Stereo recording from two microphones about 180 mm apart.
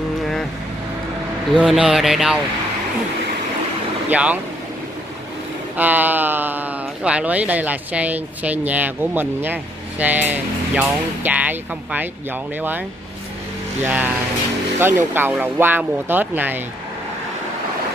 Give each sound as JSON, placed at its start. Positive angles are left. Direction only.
{"t": 1.6, "sound": "speech", "side_deg": -5}
{"t": 4.1, "sound": "speech", "side_deg": -10}
{"t": 5.8, "sound": "speech", "side_deg": -10}
{"t": 13.8, "sound": "speech", "side_deg": -10}